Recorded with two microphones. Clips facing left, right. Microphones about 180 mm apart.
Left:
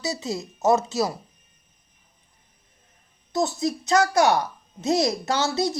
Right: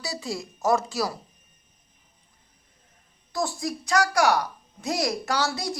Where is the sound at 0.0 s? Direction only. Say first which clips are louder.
Left 4 dB; 20° left (ahead or behind).